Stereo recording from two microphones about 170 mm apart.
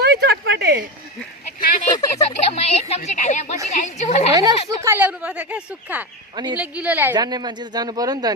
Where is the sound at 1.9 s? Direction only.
20° left (ahead or behind).